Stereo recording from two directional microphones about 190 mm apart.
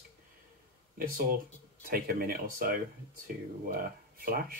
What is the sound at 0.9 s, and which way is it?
Speech, 50° right (ahead or behind).